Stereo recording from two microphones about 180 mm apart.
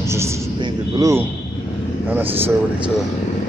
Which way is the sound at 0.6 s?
20° right (ahead or behind).